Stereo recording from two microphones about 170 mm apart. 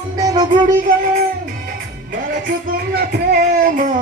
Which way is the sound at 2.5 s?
65° right (ahead or behind).